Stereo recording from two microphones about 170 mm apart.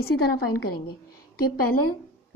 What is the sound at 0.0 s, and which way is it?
A woman's voice, 65° left (ahead or behind).